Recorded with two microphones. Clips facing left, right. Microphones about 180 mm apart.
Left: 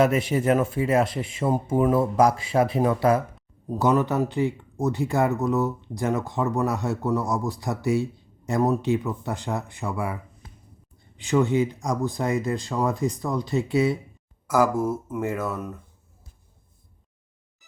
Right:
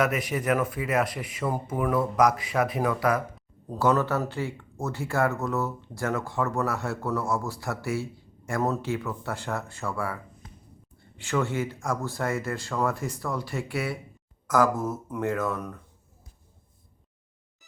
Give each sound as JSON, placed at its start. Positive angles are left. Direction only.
{"t": 0.0, "sound": "speech", "side_deg": 30}
{"t": 3.7, "sound": "speech", "side_deg": 15}
{"t": 14.4, "sound": "speech", "side_deg": 10}